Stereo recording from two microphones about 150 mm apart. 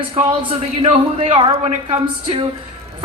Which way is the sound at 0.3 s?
35° right (ahead or behind).